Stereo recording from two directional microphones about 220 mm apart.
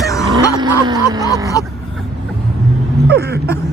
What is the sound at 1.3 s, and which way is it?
Speech, 15° left (ahead or behind).